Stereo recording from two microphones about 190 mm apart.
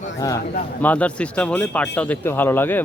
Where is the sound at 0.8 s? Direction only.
5° left (ahead or behind).